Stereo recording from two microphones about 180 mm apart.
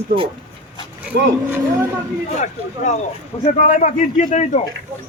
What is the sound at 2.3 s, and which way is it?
Speech, 45° left (ahead or behind).